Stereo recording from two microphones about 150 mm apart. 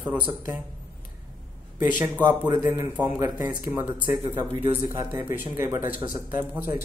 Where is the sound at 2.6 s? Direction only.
15° right (ahead or behind).